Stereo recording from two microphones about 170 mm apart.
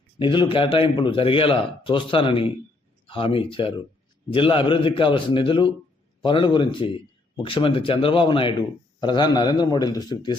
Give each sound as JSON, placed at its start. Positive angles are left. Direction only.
{"t": 0.2, "sound": "a man's voice", "side_deg": 30}